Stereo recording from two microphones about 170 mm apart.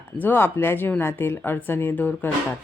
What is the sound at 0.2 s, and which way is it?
A woman's voice, 10° left (ahead or behind).